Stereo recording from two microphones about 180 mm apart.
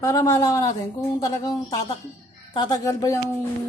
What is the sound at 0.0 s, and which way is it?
A woman's voice, 15° left (ahead or behind).